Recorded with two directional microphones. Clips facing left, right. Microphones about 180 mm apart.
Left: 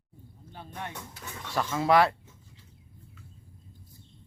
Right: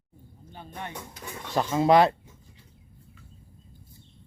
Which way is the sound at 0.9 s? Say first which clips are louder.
Right 3 dB; 15° right (ahead or behind).